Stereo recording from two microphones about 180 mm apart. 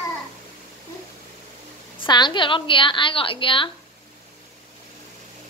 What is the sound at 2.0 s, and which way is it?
A woman's voice, 25° left (ahead or behind).